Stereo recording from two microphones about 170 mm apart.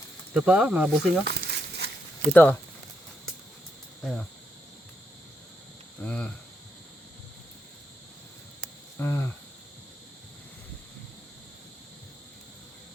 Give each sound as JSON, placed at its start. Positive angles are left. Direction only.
{"t": 0.3, "sound": "speech", "side_deg": -5}
{"t": 1.2, "sound": "crumpling", "side_deg": -70}
{"t": 2.3, "sound": "cricket", "side_deg": 10}
{"t": 4.0, "sound": "speech", "side_deg": 0}
{"t": 6.0, "sound": "cricket", "side_deg": 5}
{"t": 9.0, "sound": "cricket", "side_deg": 10}